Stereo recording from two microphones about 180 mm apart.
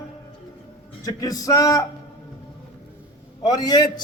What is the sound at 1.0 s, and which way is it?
Speech, 20° left (ahead or behind).